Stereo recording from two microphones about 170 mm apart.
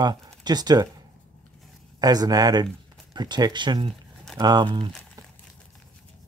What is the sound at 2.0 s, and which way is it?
Speech, 20° right (ahead or behind).